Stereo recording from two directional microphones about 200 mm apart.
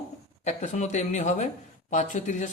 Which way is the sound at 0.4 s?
35° left (ahead or behind).